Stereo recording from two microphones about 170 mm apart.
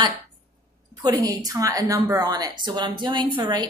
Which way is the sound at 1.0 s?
20° right (ahead or behind).